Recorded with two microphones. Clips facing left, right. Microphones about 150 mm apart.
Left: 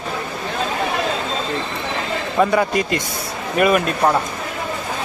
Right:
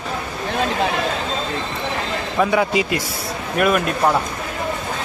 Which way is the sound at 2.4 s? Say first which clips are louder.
Left 1 dB; centre (ahead or behind).